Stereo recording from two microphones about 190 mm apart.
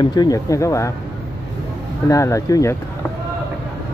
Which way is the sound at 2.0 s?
15° left (ahead or behind).